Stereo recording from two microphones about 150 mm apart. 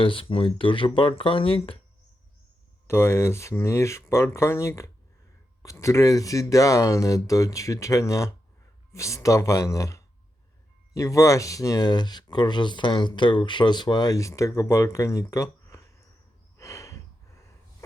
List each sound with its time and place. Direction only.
0.0 s speech: 35° left (ahead or behind)
2.8 s speech: 15° left (ahead or behind)
16.6 s snort: 20° left (ahead or behind)